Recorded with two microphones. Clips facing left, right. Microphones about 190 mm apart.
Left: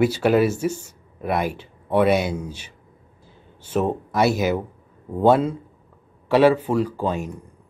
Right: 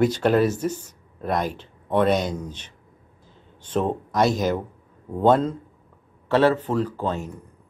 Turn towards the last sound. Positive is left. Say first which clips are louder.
# left 2 dB
turn(degrees=10)  # may be behind; listen again after turning